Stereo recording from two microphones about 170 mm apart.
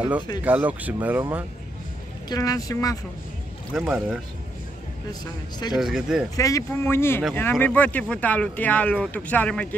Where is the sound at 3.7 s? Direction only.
5° right (ahead or behind).